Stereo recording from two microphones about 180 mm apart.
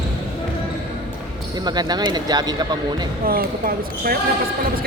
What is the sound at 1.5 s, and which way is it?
Speech, 20° right (ahead or behind).